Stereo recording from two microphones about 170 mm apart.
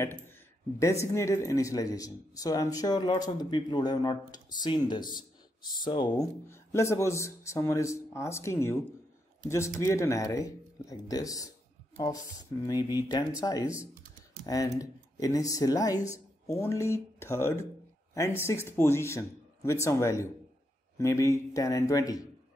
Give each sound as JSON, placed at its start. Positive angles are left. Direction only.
{"t": 1.0, "sound": "speech", "side_deg": 15}
{"t": 12.6, "sound": "speech", "side_deg": 25}